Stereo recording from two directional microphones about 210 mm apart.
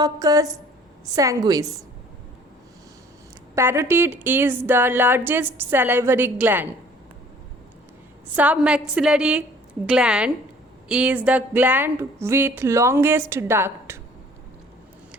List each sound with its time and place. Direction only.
0.0 s speech: 15° right (ahead or behind)
3.5 s speech: 10° right (ahead or behind)
8.4 s a woman's voice: 5° right (ahead or behind)